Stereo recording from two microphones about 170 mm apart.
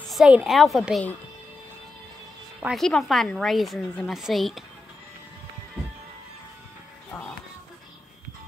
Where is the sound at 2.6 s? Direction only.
Centre (ahead or behind).